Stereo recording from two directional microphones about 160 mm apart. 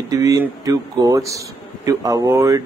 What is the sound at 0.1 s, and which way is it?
Speech, 20° right (ahead or behind).